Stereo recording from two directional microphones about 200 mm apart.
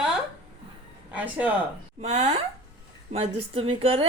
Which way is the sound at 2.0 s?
30° right (ahead or behind).